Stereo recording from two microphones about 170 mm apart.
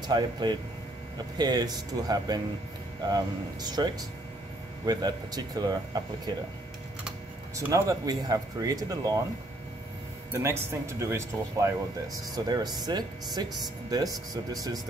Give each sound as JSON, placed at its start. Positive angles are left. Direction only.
{"t": 0.0, "sound": "speech", "side_deg": -25}
{"t": 7.5, "sound": "speech", "side_deg": -20}
{"t": 10.3, "sound": "speech", "side_deg": -15}